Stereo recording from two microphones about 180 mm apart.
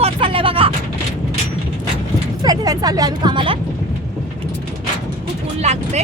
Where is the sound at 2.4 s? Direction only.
20° right (ahead or behind).